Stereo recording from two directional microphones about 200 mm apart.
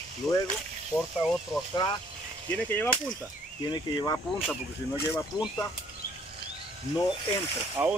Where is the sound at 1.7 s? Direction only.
20° left (ahead or behind).